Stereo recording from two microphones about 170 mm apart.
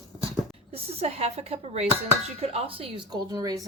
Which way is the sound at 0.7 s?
35° right (ahead or behind).